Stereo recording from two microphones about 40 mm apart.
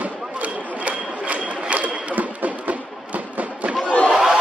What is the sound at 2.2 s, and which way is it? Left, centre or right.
Music, right.